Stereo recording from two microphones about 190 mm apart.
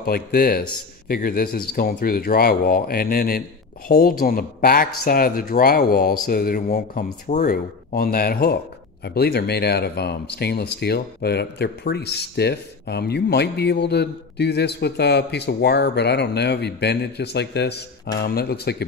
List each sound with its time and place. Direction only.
0.0 s speech: 50° left (ahead or behind)